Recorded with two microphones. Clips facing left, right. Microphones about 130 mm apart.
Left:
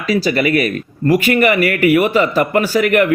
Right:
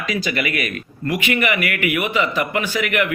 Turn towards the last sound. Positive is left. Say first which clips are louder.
# left 8 dB
turn(degrees=40)  # may be behind; listen again after turning